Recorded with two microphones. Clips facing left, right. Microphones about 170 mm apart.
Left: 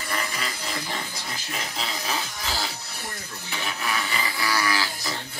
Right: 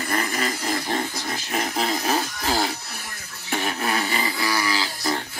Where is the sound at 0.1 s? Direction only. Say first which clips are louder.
Right 5 dB; 45° right (ahead or behind).